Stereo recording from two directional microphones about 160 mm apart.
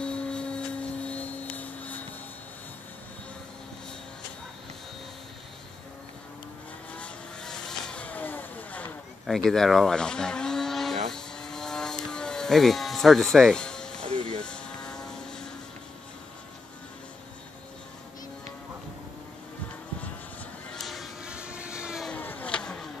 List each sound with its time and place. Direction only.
0.0 s vacuum cleaner: 5° left (ahead or behind)
1.0 s vehicle: 10° left (ahead or behind)
7.0 s vehicle: 5° left (ahead or behind)
9.5 s speech: centre (ahead or behind)
11.1 s vehicle: 5° left (ahead or behind)
14.1 s vehicle: 30° right (ahead or behind)
14.4 s vehicle: 5° left (ahead or behind)
20.7 s vehicle: centre (ahead or behind)
22.1 s vehicle: 10° left (ahead or behind)